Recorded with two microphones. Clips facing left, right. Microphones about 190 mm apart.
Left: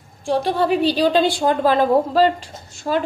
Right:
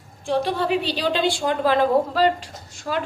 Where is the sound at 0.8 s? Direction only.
40° left (ahead or behind).